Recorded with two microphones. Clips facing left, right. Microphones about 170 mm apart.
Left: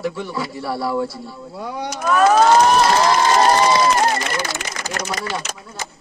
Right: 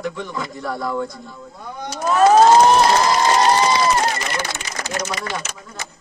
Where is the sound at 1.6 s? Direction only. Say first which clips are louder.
Left 7 dB; 80° left.